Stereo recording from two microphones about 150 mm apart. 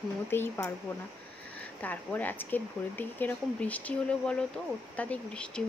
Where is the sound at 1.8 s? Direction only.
10° left (ahead or behind).